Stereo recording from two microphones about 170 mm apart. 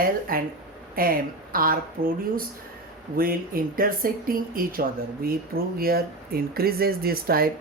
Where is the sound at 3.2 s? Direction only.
60° right (ahead or behind).